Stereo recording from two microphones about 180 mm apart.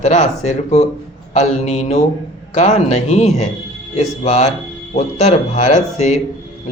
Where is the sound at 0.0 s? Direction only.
40° left (ahead or behind).